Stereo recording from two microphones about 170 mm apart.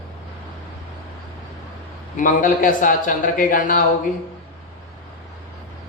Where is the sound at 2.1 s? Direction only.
50° left (ahead or behind).